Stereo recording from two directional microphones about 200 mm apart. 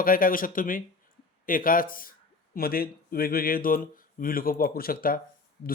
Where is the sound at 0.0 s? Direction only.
45° left (ahead or behind).